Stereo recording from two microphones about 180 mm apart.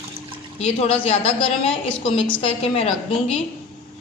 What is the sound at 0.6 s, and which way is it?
A woman's voice, 35° left (ahead or behind).